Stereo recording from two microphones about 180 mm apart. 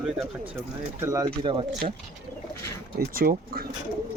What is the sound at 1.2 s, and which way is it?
Speech, 30° right (ahead or behind).